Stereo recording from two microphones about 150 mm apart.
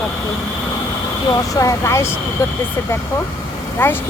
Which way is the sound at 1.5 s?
20° left (ahead or behind).